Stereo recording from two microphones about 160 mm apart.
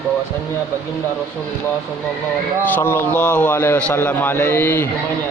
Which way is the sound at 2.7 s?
15° left (ahead or behind).